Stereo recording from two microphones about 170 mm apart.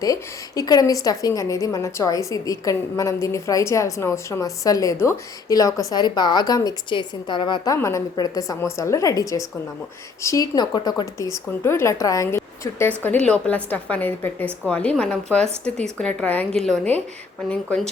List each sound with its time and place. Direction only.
0.0 s a woman's voice: 20° left (ahead or behind)